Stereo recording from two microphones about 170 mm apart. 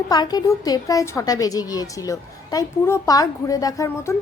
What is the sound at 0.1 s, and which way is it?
A child's voice, 25° left (ahead or behind).